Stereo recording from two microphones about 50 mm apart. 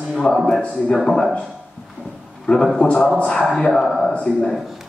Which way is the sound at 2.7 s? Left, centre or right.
Left.